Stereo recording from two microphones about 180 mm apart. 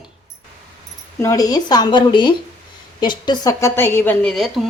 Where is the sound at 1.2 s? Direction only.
20° left (ahead or behind).